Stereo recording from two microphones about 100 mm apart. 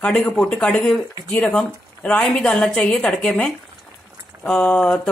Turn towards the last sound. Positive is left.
turn(degrees=10)  # may be behind; listen again after turning